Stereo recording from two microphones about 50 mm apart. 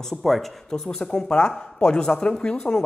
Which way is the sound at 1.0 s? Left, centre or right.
Centre.